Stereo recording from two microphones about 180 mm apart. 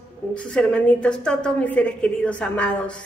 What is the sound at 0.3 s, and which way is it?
A woman's voice, 5° left (ahead or behind).